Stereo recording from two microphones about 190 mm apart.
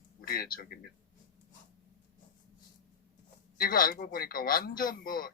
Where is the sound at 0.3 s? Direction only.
50° left (ahead or behind).